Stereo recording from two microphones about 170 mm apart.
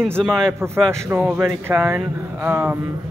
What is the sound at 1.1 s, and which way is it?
Speech, 10° right (ahead or behind).